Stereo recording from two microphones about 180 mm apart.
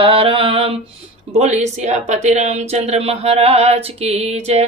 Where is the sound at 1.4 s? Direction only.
40° right (ahead or behind).